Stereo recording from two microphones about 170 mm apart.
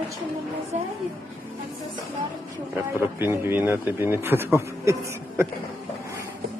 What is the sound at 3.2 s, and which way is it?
Speech, 10° right (ahead or behind).